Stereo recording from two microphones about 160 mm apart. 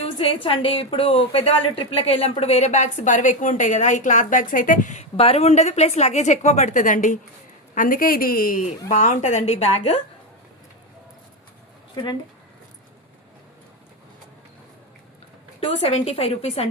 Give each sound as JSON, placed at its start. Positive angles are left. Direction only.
{"t": 0.0, "sound": "a woman's voice", "side_deg": 35}
{"t": 8.9, "sound": "a woman's voice", "side_deg": 50}
{"t": 12.0, "sound": "a woman's voice", "side_deg": 30}
{"t": 15.6, "sound": "a woman's voice", "side_deg": 40}